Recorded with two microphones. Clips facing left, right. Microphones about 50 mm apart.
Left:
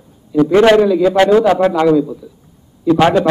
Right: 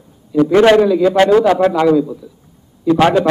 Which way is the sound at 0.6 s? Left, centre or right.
Centre.